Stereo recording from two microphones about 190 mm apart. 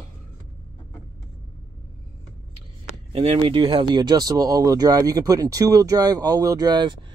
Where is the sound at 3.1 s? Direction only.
30° right (ahead or behind).